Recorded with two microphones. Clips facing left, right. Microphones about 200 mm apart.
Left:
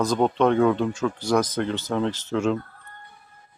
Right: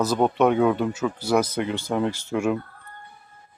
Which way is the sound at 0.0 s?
5° right (ahead or behind).